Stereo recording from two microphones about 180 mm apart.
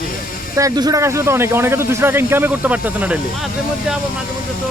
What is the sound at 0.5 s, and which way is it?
Speech, 20° right (ahead or behind).